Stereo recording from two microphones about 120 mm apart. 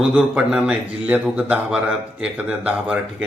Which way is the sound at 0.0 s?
10° right (ahead or behind).